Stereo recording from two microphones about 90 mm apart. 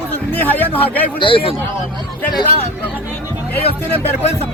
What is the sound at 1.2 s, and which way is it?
Speech, 80° left.